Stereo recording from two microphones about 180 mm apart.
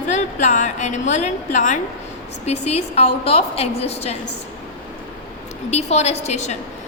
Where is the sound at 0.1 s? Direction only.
40° left (ahead or behind).